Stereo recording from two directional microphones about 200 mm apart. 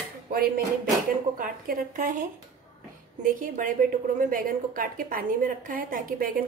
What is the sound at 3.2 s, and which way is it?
A woman's voice, 40° right (ahead or behind).